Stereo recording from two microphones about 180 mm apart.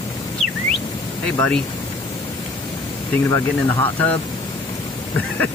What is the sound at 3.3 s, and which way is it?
Speech, 20° left (ahead or behind).